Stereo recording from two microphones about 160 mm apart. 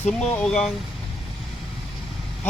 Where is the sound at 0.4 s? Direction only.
5° left (ahead or behind).